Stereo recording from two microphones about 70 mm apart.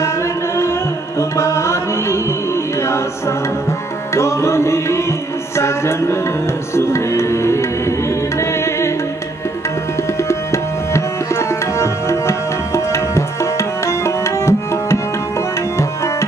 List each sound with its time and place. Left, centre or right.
1.3 s music: left
4.1 s music: left
10.2 s tabla: left